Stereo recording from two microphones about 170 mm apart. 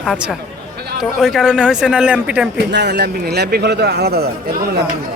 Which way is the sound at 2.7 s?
80° right.